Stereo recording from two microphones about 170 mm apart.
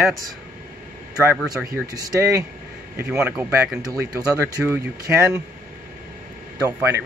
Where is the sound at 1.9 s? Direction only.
20° right (ahead or behind).